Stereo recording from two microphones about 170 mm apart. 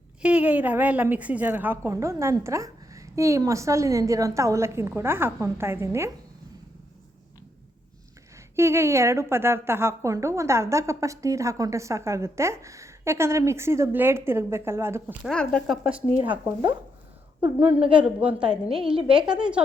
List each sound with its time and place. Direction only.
0.2 s a woman's voice: 5° right (ahead or behind)
8.5 s a woman's voice: 15° right (ahead or behind)
15.2 s speech: 5° left (ahead or behind)
17.9 s a woman's voice: 5° right (ahead or behind)